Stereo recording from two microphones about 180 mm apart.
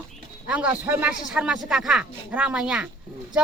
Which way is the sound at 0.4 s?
5° right (ahead or behind).